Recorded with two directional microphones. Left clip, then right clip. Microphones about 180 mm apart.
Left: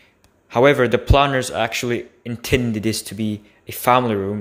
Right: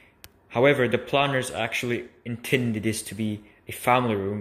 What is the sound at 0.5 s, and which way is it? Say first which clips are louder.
Speech: left 6 dB; 30° left (ahead or behind).